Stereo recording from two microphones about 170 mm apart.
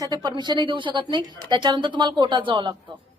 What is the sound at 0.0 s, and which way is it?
A woman's voice, 25° right (ahead or behind).